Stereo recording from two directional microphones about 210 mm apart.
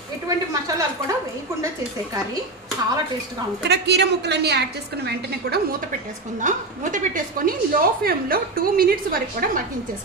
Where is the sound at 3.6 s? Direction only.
55° right (ahead or behind).